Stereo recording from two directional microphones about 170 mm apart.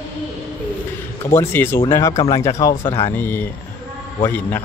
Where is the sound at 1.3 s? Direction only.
15° left (ahead or behind).